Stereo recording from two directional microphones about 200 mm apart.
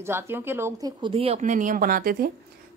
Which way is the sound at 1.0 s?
25° right (ahead or behind).